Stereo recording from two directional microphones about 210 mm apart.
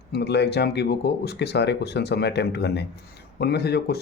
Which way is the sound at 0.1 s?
50° left (ahead or behind).